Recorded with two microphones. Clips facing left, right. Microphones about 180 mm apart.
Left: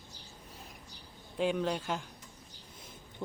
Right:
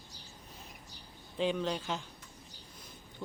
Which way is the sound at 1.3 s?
5° left (ahead or behind).